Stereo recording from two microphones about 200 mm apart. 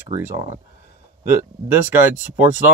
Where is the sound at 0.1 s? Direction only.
15° right (ahead or behind).